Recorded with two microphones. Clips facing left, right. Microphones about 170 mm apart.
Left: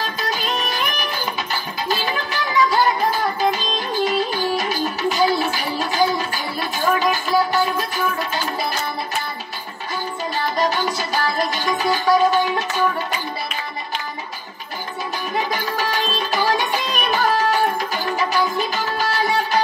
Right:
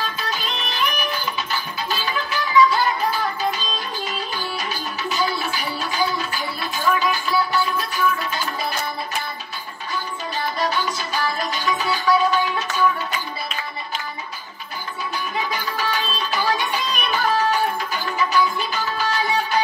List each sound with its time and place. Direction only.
0.0 s music: 40° left (ahead or behind)
10.5 s music: 40° left (ahead or behind)
15.3 s music: 40° left (ahead or behind)